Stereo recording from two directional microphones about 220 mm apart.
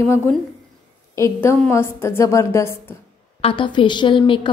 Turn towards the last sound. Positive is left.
turn(degrees=20)  # may be behind; listen again after turning